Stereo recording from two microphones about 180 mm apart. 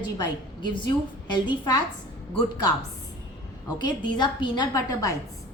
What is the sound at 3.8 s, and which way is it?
A woman's voice, 25° left (ahead or behind).